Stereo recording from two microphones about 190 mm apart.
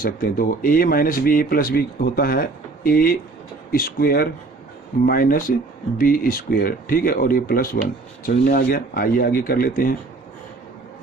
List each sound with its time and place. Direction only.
0.0 s speech: 50° left (ahead or behind)